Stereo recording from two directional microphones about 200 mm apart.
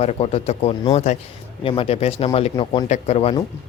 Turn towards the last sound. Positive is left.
turn(degrees=30)  # may be behind; listen again after turning